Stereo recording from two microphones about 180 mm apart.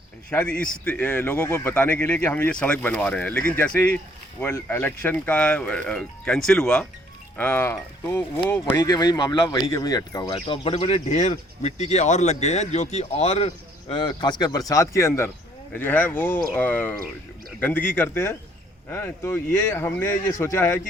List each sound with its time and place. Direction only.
0.3 s speech: 5° left (ahead or behind)
8.8 s speech: 20° left (ahead or behind)
13.9 s speech: 25° left (ahead or behind)